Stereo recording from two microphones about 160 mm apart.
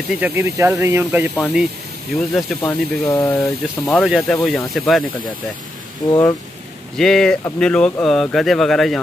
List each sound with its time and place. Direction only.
0.2 s speech: 15° right (ahead or behind)
1.3 s speech: centre (ahead or behind)
2.6 s speech: 15° left (ahead or behind)
3.3 s speech: centre (ahead or behind)
6.0 s speech: 20° left (ahead or behind)
7.0 s speech: 5° left (ahead or behind)